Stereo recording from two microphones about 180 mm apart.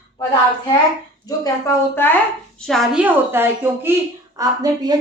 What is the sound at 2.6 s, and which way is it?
A woman's voice, centre (ahead or behind).